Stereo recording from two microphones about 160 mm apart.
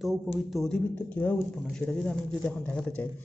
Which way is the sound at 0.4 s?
Centre (ahead or behind).